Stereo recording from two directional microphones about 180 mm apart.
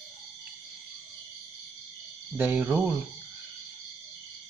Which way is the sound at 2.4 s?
10° right (ahead or behind).